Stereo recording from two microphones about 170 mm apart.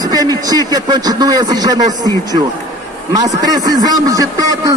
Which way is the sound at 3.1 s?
20° right (ahead or behind).